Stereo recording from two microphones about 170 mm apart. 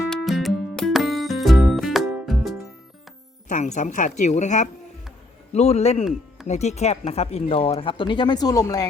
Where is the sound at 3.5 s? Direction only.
45° left (ahead or behind).